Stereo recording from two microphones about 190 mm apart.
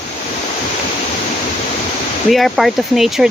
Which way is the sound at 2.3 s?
Centre (ahead or behind).